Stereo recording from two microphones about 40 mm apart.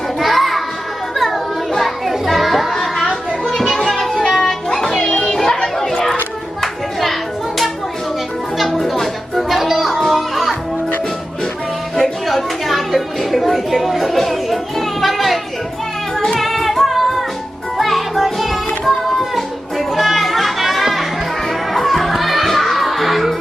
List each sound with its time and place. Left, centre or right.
0.2 s children playing: centre
1.1 s music: centre
2.8 s chatter: centre
3.8 s music: centre
5.2 s music: centre
5.6 s chatter: centre
6.6 s music: centre
8.5 s music: centre
11.9 s a sound: centre
16.1 s music: centre